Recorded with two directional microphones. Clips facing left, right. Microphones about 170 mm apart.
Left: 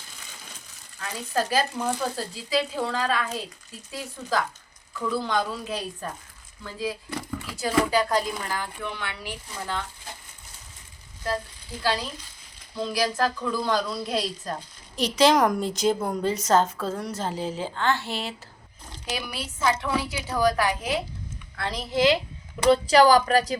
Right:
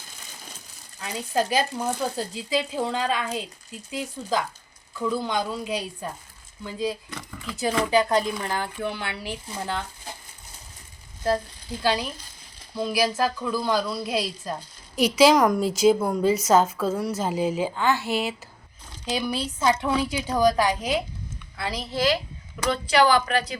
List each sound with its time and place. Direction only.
0.9 s a woman's voice: 15° right (ahead or behind)
11.8 s a woman's voice: 20° right (ahead or behind)
19.1 s a woman's voice: 25° right (ahead or behind)
21.5 s a woman's voice: 5° right (ahead or behind)
21.9 s speech: 25° left (ahead or behind)
22.6 s speech: 35° left (ahead or behind)